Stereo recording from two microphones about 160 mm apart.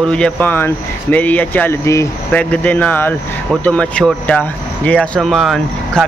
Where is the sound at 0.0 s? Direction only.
5° left (ahead or behind).